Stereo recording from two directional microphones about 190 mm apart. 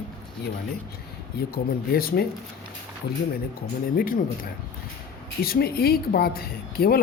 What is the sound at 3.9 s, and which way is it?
Speech, 50° left (ahead or behind).